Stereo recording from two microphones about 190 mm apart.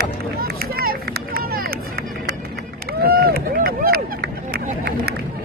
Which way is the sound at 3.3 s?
55° right (ahead or behind).